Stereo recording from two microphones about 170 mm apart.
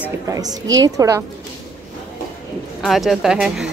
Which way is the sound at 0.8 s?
20° right (ahead or behind).